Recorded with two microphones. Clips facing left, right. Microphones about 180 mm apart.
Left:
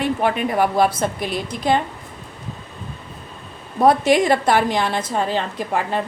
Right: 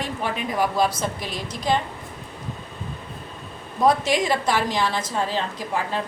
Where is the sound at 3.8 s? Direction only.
60° left (ahead or behind).